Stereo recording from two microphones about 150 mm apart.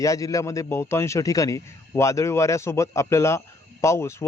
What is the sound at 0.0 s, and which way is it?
A man's voice, 20° left (ahead or behind).